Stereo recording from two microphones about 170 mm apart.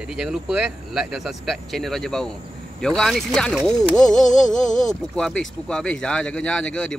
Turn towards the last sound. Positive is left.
turn(degrees=5)  # may be behind; listen again after turning